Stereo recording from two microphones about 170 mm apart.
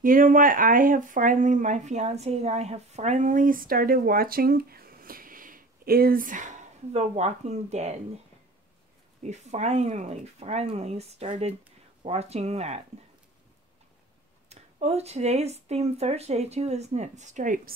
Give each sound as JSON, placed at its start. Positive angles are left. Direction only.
{"t": 0.0, "sound": "speech", "side_deg": -55}
{"t": 9.2, "sound": "speech", "side_deg": -40}
{"t": 14.5, "sound": "speech", "side_deg": -40}